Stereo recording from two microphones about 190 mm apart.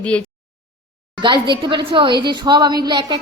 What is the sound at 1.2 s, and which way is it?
A woman's voice, 25° right (ahead or behind).